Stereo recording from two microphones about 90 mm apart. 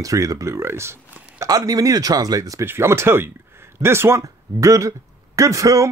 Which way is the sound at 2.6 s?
25° right (ahead or behind).